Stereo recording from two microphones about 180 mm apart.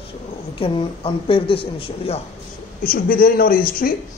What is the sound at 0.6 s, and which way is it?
A man's voice, 30° left (ahead or behind).